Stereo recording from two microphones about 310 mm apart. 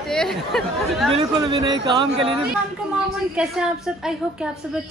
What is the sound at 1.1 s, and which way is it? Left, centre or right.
Speech, centre.